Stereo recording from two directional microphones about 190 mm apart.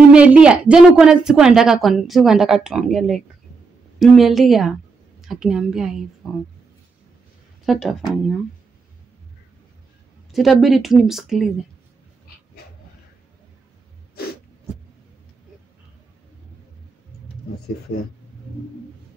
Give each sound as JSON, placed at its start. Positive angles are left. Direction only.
{"t": 0.1, "sound": "a woman's voice", "side_deg": -5}
{"t": 7.6, "sound": "a woman's voice", "side_deg": 0}
{"t": 10.3, "sound": "a woman's voice", "side_deg": 0}
{"t": 17.9, "sound": "speech", "side_deg": 90}